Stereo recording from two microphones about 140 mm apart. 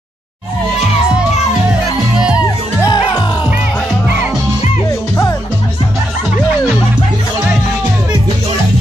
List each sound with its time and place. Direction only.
2.1 s music: 5° right (ahead or behind)
2.8 s music: 30° left (ahead or behind)